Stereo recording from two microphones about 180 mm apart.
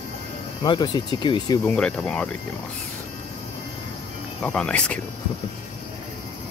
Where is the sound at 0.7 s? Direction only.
25° left (ahead or behind).